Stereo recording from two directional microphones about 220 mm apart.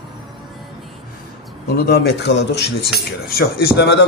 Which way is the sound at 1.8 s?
50° left (ahead or behind).